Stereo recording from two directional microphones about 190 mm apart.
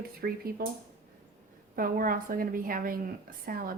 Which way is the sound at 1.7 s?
45° right (ahead or behind).